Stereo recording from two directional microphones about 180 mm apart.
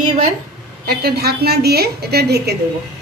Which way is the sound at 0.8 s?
60° right (ahead or behind).